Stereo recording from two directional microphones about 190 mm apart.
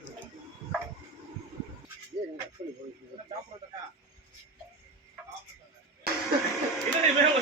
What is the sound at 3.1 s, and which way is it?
Radio, 25° right (ahead or behind).